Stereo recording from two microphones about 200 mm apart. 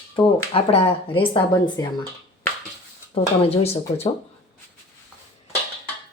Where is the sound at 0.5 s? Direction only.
30° left (ahead or behind).